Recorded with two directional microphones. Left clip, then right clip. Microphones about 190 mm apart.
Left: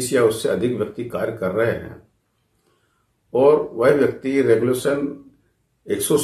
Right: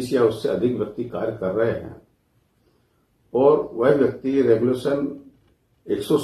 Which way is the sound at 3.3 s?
10° left (ahead or behind).